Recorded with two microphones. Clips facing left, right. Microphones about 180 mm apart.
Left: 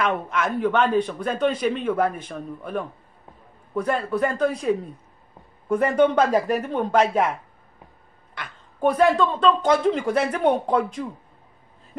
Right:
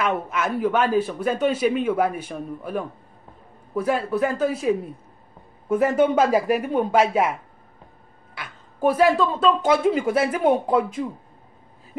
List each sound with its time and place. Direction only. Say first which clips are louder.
0.0 s a man's voice: even; 5° right (ahead or behind)
8.4 s a man's voice: even; 5° right (ahead or behind)